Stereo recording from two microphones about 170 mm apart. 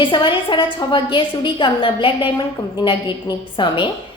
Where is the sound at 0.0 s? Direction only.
30° left (ahead or behind).